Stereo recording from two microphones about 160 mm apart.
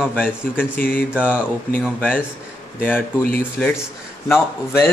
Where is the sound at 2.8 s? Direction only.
10° left (ahead or behind).